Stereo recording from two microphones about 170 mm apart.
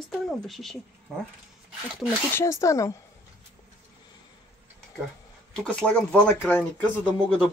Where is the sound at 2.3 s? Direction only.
15° left (ahead or behind).